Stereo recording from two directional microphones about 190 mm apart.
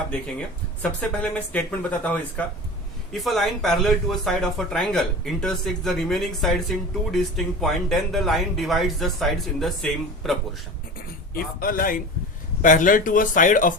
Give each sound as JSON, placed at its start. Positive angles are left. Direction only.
{"t": 0.1, "sound": "speech", "side_deg": 5}
{"t": 11.3, "sound": "speech", "side_deg": 50}